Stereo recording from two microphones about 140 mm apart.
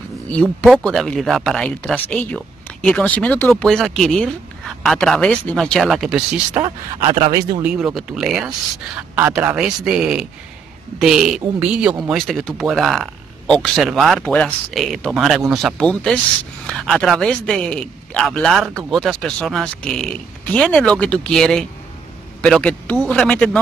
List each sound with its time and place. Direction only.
0.7 s speech: centre (ahead or behind)
7.0 s speech: 35° right (ahead or behind)
7.6 s speech: 5° right (ahead or behind)